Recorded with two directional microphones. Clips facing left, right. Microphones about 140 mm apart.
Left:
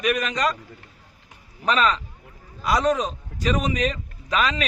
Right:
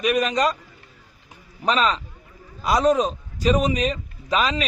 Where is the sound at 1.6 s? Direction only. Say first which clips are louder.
Even; 25° right (ahead or behind).